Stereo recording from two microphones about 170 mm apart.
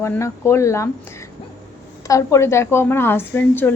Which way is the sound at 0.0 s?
15° left (ahead or behind).